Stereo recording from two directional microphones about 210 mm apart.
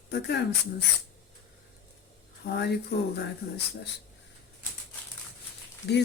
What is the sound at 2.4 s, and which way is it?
Speech, 45° left (ahead or behind).